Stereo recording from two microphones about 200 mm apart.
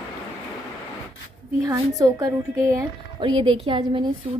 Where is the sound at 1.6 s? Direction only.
20° right (ahead or behind).